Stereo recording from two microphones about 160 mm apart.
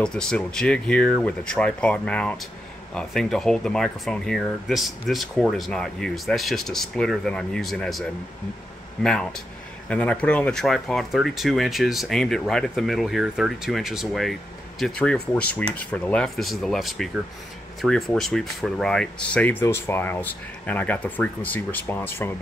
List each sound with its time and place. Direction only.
0.0 s speech: 5° left (ahead or behind)